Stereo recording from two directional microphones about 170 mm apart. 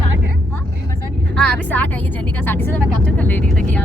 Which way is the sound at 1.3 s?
5° left (ahead or behind).